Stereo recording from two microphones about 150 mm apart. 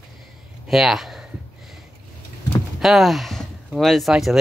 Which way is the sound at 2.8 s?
Centre (ahead or behind).